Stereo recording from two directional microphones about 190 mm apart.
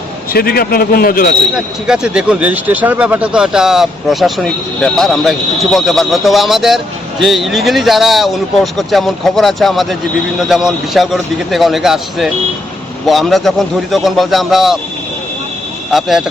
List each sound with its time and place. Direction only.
0.3 s speech: 55° left (ahead or behind)
1.5 s speech: 5° right (ahead or behind)
15.9 s speech: centre (ahead or behind)